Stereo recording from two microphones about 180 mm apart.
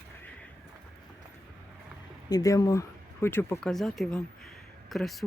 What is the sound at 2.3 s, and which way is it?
Speech, 20° left (ahead or behind).